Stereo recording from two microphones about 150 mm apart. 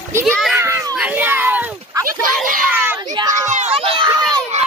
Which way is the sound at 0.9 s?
10° right (ahead or behind).